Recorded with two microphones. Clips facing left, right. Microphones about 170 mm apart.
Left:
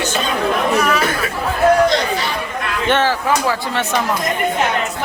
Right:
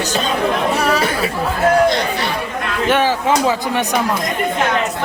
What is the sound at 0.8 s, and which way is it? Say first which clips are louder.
Speech: even; 30° right (ahead or behind).